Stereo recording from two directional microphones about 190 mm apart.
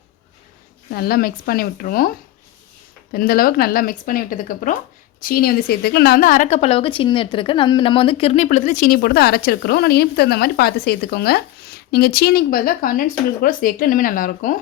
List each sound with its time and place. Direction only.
0.9 s speech: 55° left (ahead or behind)